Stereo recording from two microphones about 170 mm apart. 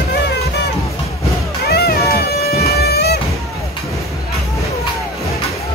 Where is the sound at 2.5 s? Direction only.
70° left (ahead or behind).